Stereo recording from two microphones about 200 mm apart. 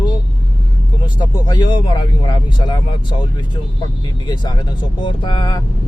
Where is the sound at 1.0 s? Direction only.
20° left (ahead or behind).